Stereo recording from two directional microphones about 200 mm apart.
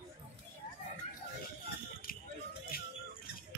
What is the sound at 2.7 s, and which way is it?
Music, 50° left (ahead or behind).